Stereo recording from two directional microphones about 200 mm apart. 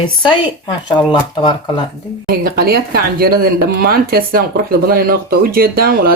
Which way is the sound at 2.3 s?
50° right (ahead or behind).